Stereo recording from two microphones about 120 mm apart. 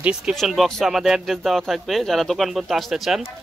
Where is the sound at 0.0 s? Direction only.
5° right (ahead or behind).